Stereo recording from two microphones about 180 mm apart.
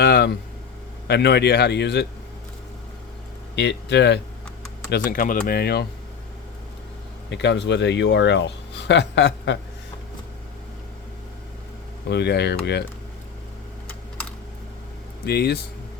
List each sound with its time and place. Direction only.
0.0 s a sound: 65° left (ahead or behind)
1.0 s speech: 65° left (ahead or behind)
3.5 s speech: 75° left (ahead or behind)
4.9 s speech: 60° left (ahead or behind)
7.3 s speech: 75° left (ahead or behind)
12.0 s speech: 70° left (ahead or behind)
15.3 s speech: 60° left (ahead or behind)